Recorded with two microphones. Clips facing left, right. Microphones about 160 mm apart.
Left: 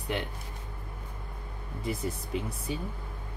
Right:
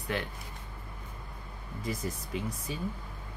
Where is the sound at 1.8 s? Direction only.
25° left (ahead or behind).